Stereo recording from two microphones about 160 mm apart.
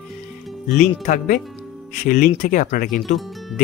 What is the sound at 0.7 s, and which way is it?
Speech, 55° left (ahead or behind).